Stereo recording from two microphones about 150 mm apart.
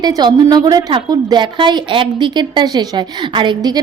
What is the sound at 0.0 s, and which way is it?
A woman's voice, 30° right (ahead or behind).